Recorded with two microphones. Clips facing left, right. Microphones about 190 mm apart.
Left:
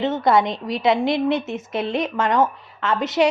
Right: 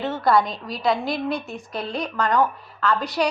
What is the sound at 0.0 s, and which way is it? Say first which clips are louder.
A woman's voice: left 2 dB; 20° left (ahead or behind).